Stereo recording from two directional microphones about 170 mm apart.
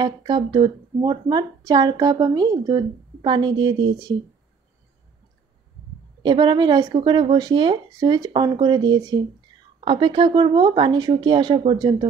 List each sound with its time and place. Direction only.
0.0 s speech: 25° right (ahead or behind)
6.2 s speech: 25° right (ahead or behind)